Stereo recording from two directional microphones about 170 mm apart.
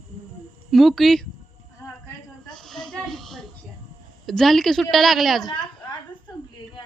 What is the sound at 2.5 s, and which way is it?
Speech, centre (ahead or behind).